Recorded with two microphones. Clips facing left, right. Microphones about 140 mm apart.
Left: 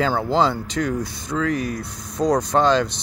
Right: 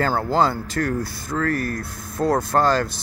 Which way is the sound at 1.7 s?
5° right (ahead or behind).